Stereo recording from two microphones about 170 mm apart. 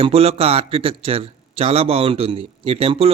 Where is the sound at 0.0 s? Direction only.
35° right (ahead or behind).